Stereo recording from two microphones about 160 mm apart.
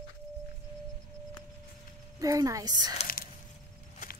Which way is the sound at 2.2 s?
20° right (ahead or behind).